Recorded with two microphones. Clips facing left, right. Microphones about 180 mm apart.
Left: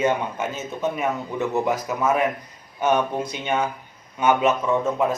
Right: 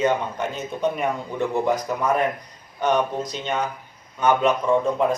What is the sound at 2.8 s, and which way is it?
A man's voice, 10° left (ahead or behind).